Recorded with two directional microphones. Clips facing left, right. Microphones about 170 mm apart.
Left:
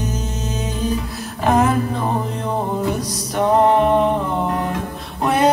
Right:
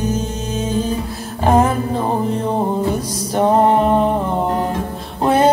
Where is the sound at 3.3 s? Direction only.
30° right (ahead or behind).